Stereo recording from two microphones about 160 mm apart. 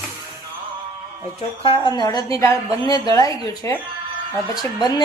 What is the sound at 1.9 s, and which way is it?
A woman's voice, 25° left (ahead or behind).